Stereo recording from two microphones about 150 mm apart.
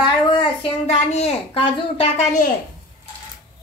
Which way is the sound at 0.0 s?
35° left (ahead or behind).